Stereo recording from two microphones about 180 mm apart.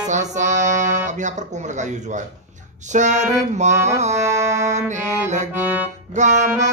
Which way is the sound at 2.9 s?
40° right (ahead or behind).